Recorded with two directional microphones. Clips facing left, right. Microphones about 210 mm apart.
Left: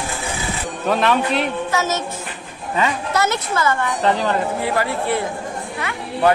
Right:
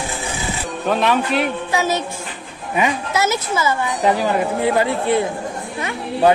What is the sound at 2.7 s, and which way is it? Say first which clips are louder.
A woman's voice: right 1 dB; 15° right (ahead or behind).